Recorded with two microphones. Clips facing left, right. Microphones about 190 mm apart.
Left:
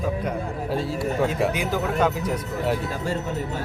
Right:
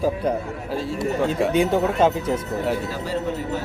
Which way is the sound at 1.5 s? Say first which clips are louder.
Right 5 dB; 25° right (ahead or behind).